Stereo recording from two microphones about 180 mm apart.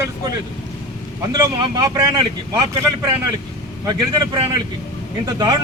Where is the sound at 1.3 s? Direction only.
20° right (ahead or behind).